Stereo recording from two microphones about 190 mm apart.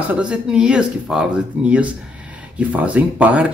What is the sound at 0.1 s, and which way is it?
Speech, 5° right (ahead or behind).